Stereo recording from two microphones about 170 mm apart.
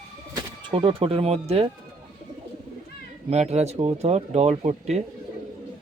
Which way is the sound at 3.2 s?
40° right (ahead or behind).